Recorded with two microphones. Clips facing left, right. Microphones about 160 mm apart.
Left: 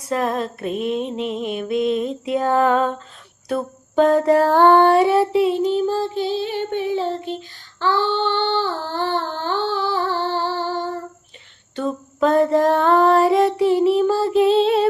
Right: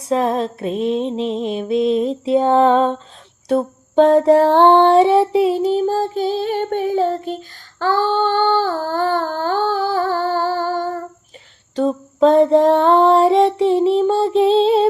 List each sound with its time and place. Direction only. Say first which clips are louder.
0.1 s music: right 4 dB; 30° right (ahead or behind)
5.3 s female singing: right 2 dB; 35° right (ahead or behind)
11.7 s female singing: right 6 dB; 35° right (ahead or behind)